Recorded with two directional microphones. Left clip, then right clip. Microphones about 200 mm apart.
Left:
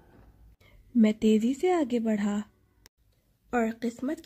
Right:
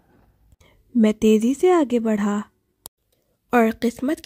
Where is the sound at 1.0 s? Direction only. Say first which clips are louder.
Right 8 dB; 30° right (ahead or behind).